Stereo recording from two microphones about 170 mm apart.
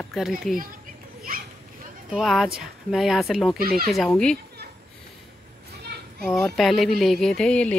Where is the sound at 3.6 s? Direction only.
60° right (ahead or behind).